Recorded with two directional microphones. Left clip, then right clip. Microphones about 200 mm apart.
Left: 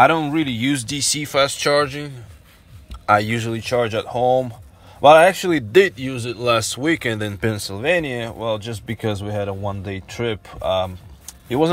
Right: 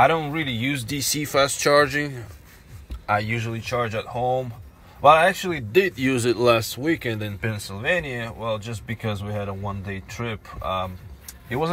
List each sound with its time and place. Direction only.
0.0 s speech: 30° left (ahead or behind)
0.8 s speech: 5° left (ahead or behind)
2.9 s speech: 20° left (ahead or behind)
5.9 s speech: 10° right (ahead or behind)
6.4 s speech: 10° left (ahead or behind)
7.3 s speech: 30° left (ahead or behind)